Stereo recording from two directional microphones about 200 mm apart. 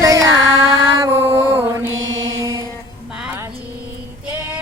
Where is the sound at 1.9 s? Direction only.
75° right (ahead or behind).